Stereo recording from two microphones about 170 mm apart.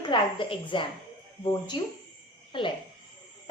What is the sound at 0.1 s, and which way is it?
A woman's voice, 30° left (ahead or behind).